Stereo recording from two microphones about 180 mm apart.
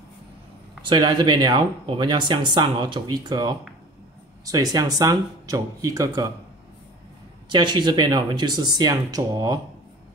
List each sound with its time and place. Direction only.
0.8 s speech: 25° right (ahead or behind)
7.5 s speech: 25° right (ahead or behind)